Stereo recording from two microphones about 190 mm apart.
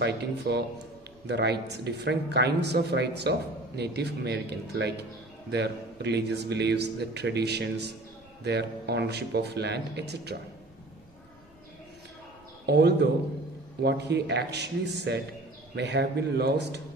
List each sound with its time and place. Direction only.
0.0 s speech: 60° right (ahead or behind)
12.6 s speech: 60° right (ahead or behind)